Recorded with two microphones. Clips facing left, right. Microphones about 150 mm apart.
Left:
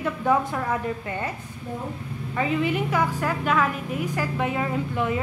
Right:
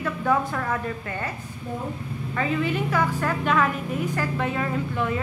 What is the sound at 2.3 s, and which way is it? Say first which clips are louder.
A woman's voice: left 1 dB; 15° left (ahead or behind).